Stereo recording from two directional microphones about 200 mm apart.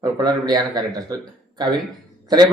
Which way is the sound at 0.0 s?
20° right (ahead or behind).